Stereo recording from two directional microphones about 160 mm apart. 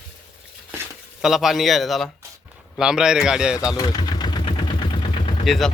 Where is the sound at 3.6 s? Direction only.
20° left (ahead or behind).